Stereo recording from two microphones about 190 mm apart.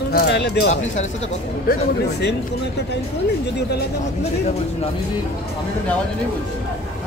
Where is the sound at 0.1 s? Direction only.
60° left (ahead or behind).